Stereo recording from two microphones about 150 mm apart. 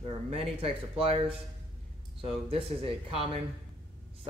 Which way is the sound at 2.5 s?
40° right (ahead or behind).